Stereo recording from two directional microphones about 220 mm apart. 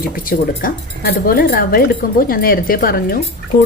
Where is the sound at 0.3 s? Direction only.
40° left (ahead or behind).